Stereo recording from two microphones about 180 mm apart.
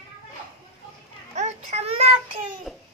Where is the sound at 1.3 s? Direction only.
40° right (ahead or behind).